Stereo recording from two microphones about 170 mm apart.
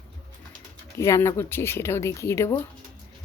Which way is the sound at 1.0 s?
15° left (ahead or behind).